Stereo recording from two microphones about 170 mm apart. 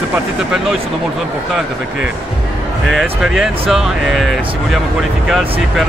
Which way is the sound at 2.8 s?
Centre (ahead or behind).